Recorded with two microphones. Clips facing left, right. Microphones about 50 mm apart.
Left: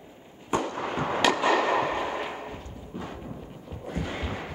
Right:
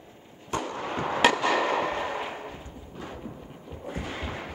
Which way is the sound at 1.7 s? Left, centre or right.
Centre.